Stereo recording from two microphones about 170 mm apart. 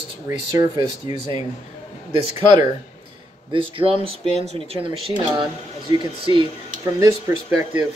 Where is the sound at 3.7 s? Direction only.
35° right (ahead or behind).